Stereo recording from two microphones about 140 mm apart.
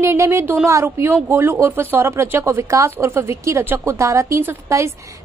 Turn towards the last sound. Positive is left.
turn(degrees=-20)  # may be behind; listen again after turning